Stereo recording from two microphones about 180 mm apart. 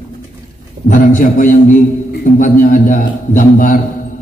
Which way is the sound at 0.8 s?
45° left (ahead or behind).